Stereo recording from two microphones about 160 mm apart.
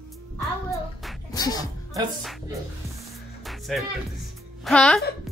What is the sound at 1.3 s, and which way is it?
Speech, 25° left (ahead or behind).